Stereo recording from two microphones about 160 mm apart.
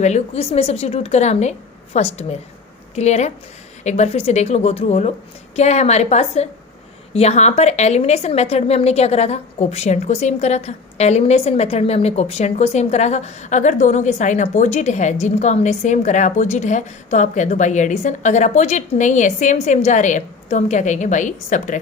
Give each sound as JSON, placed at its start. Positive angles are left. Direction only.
{"t": 0.0, "sound": "a woman's voice", "side_deg": 45}